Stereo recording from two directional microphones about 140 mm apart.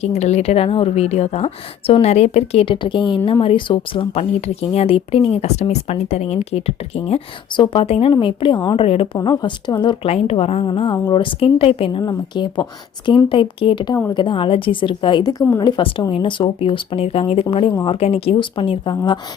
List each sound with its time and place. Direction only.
0.0 s a woman's voice: 50° left (ahead or behind)
9.1 s a woman's voice: 30° left (ahead or behind)